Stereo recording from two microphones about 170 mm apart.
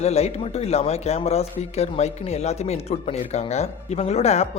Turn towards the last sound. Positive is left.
turn(degrees=40)  # may be behind; listen again after turning